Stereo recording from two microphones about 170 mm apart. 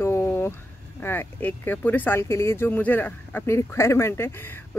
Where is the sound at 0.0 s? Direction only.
15° left (ahead or behind).